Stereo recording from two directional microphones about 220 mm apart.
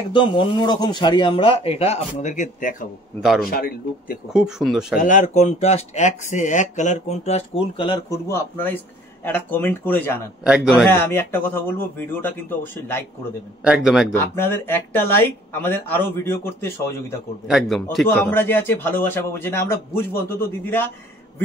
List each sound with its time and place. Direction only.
0.1 s speech: 20° left (ahead or behind)
3.2 s speech: centre (ahead or behind)
3.4 s speech: 40° left (ahead or behind)
4.3 s speech: 5° right (ahead or behind)
5.0 s a man's voice: 35° left (ahead or behind); by 13.0 s 10° left (ahead or behind)
13.7 s speech: centre (ahead or behind)
14.1 s a man's voice: 10° left (ahead or behind)
17.5 s a man's voice: centre (ahead or behind)